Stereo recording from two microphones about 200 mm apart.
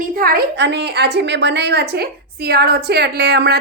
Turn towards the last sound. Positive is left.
turn(degrees=-55)  # may be behind; listen again after turning